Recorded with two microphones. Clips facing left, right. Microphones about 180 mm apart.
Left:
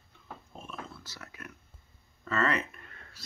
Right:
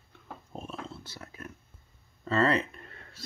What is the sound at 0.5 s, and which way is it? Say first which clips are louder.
Dog: right 5 dB; 35° right (ahead or behind).